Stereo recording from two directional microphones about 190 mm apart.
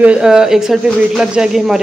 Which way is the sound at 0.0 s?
5° right (ahead or behind).